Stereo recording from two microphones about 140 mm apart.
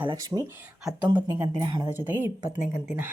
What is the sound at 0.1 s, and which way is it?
Speech, 30° right (ahead or behind).